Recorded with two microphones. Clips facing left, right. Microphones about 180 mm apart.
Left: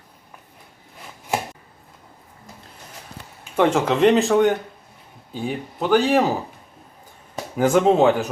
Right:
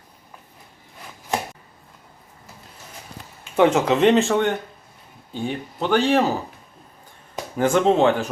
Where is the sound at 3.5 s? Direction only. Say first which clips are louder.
Right 1 dB; centre (ahead or behind).